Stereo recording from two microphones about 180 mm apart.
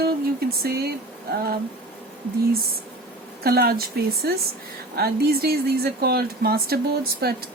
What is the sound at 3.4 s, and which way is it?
Speech, 60° right (ahead or behind).